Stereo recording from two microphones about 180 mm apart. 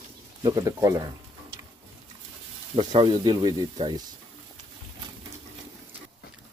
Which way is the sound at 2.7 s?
30° right (ahead or behind).